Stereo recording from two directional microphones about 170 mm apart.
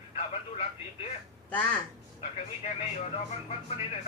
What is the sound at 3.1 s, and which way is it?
Speech, 40° left (ahead or behind).